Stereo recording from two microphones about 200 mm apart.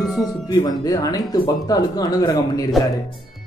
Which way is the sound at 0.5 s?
20° left (ahead or behind).